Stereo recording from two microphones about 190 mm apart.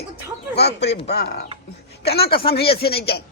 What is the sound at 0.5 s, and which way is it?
A man's voice, 60° left (ahead or behind).